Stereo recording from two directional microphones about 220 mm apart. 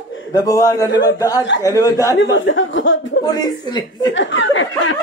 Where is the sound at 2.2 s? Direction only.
60° left (ahead or behind).